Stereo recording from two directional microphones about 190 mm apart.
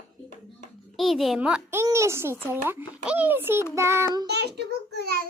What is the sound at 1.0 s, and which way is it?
A child's voice, centre (ahead or behind).